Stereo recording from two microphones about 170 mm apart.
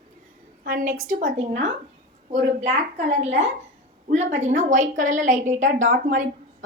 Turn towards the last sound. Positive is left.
turn(degrees=-55)  # may be behind; listen again after turning